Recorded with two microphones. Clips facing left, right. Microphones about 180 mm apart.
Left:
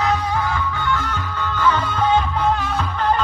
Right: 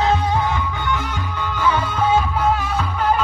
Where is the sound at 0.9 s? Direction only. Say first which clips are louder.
Even; 15° right (ahead or behind).